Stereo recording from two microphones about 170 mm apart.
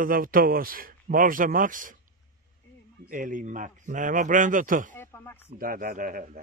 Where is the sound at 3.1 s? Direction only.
50° right (ahead or behind).